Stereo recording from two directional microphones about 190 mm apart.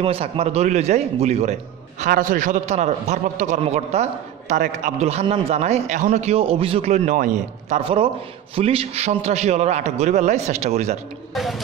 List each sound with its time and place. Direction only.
0.0 s a man's voice: 30° right (ahead or behind)
7.8 s a man's voice: 30° right (ahead or behind)
11.3 s music: centre (ahead or behind)